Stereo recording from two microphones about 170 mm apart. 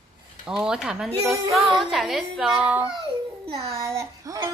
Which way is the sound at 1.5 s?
25° right (ahead or behind).